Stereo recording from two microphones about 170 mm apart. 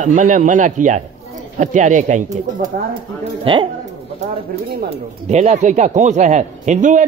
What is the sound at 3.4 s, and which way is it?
Speech, 30° right (ahead or behind).